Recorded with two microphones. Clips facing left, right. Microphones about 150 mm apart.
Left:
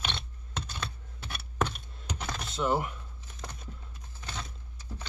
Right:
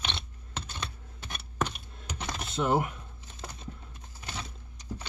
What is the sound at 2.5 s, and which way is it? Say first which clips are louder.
Speech: right 2 dB; 50° right (ahead or behind).